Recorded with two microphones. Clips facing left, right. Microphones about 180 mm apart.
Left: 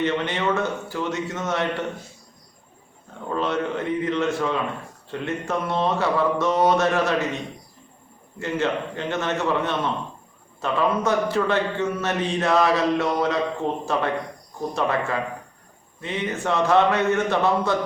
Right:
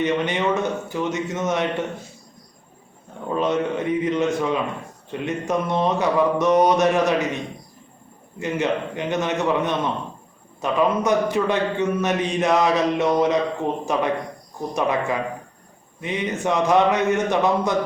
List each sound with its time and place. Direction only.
0.0 s a man's voice: 15° right (ahead or behind)
3.2 s a man's voice: 15° right (ahead or behind)
8.4 s a man's voice: 15° right (ahead or behind)